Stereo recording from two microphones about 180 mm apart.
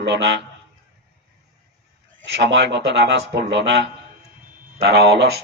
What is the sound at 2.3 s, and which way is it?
A man's voice, 80° right.